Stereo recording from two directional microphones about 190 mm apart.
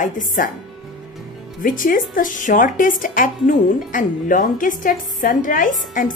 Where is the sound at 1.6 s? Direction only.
45° left (ahead or behind).